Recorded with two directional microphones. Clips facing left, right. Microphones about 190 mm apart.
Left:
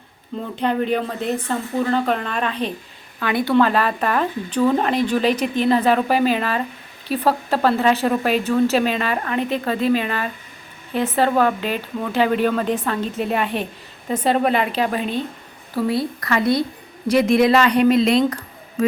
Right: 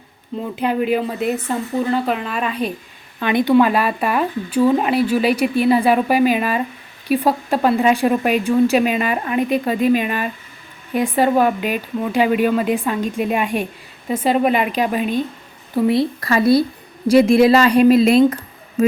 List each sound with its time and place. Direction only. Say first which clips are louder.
0.5 s speech: right 2 dB; 10° right (ahead or behind)
3.2 s speech: right 3 dB; 20° right (ahead or behind)
15.7 s speech: right 5 dB; 20° right (ahead or behind)
18.3 s a sound: right 5 dB; 25° right (ahead or behind)